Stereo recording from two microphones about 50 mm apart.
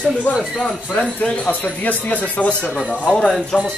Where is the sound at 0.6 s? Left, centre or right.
Centre.